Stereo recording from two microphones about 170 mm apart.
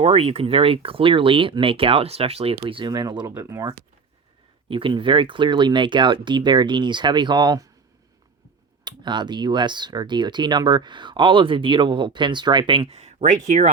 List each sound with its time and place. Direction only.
0.0 s speech: 35° right (ahead or behind)
8.8 s speech: 25° right (ahead or behind); by 13.7 s 40° right (ahead or behind)